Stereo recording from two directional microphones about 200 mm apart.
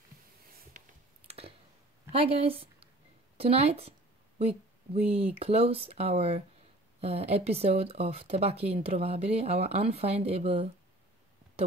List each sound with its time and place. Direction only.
1.2 s clicking: 30° right (ahead or behind)
2.1 s speech: 30° right (ahead or behind)
5.0 s speech: 30° right (ahead or behind)